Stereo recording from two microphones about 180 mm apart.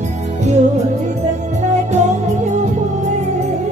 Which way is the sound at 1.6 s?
40° right (ahead or behind).